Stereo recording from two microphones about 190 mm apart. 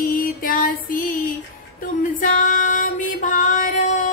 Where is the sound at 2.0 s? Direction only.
45° left (ahead or behind).